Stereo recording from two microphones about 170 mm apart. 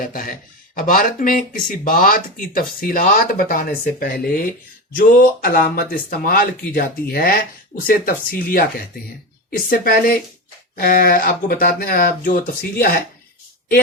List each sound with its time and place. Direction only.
0.0 s speech: 55° left (ahead or behind)